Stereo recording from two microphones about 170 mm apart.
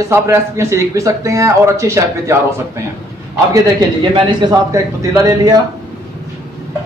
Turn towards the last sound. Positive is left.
turn(degrees=-20)  # may be behind; listen again after turning